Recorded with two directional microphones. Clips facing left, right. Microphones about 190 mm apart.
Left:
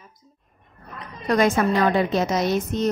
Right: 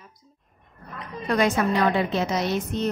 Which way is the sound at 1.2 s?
45° left (ahead or behind).